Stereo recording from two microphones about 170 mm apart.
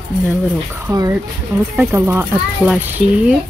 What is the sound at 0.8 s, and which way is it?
Speech, 20° right (ahead or behind).